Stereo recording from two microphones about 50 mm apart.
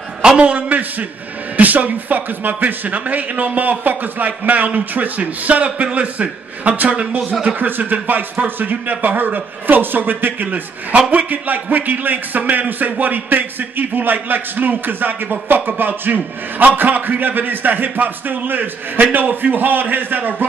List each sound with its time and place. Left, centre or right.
0.4 s a man's voice: right
7.4 s a man's voice: right